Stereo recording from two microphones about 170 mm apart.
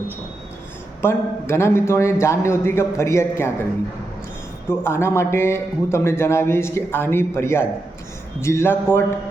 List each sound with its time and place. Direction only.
1.0 s a man's voice: 15° left (ahead or behind)
4.7 s a man's voice: 15° left (ahead or behind)